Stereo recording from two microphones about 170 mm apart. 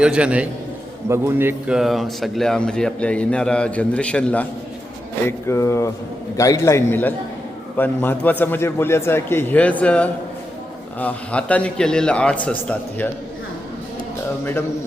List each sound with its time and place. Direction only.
0.0 s a man's voice: 5° right (ahead or behind)
5.5 s a man's voice: 15° left (ahead or behind)